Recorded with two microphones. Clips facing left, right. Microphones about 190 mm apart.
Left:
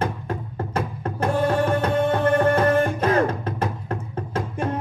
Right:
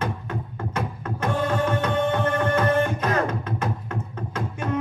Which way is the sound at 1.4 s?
35° left (ahead or behind).